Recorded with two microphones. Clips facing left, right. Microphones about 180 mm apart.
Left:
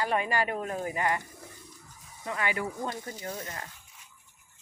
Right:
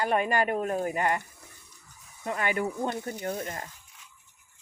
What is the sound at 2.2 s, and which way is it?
Speech, 50° right (ahead or behind).